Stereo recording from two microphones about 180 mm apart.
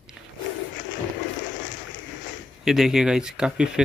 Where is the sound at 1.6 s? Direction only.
90° left.